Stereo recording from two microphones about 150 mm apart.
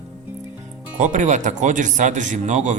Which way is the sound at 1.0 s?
55° right (ahead or behind).